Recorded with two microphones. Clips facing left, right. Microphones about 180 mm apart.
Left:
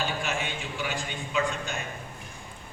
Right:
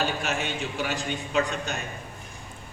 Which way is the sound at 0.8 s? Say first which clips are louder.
Right 2 dB; 40° right (ahead or behind).